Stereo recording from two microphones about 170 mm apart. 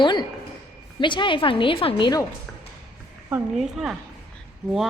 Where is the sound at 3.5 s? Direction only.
Centre (ahead or behind).